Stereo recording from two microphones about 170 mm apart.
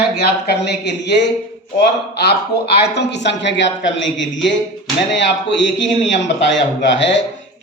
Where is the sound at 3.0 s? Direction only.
90° left.